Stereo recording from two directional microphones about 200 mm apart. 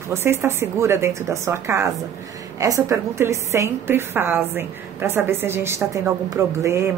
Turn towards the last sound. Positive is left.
turn(degrees=-15)  # may be behind; listen again after turning